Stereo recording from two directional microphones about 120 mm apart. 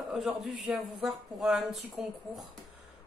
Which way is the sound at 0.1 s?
Centre (ahead or behind).